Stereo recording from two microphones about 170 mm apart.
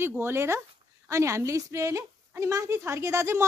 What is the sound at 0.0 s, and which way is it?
A woman's voice, 15° right (ahead or behind).